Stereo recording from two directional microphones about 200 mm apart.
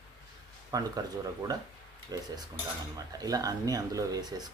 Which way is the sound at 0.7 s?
20° right (ahead or behind).